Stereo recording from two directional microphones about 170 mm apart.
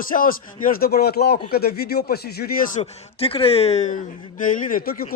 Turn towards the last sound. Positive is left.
turn(degrees=55)  # may be behind; listen again after turning